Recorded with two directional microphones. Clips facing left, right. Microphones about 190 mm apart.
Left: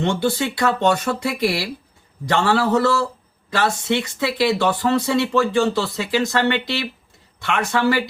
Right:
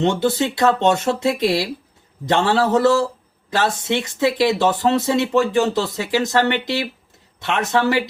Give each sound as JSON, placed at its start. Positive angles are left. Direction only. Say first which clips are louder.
{"t": 0.0, "sound": "speech", "louder": "right 2 dB", "side_deg": -20}